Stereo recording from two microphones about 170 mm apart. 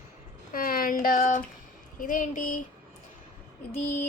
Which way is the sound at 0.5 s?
55° left (ahead or behind).